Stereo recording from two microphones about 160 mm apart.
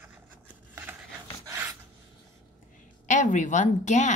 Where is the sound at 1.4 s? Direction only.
15° right (ahead or behind).